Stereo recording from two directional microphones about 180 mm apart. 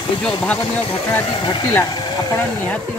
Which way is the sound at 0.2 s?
5° left (ahead or behind).